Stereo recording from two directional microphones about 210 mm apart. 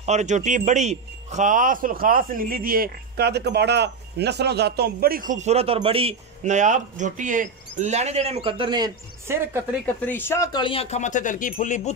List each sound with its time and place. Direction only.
0.0 s speech: 35° right (ahead or behind); by 9.6 s 15° right (ahead or behind)
10.0 s speech: 10° left (ahead or behind); by 11.9 s 35° left (ahead or behind)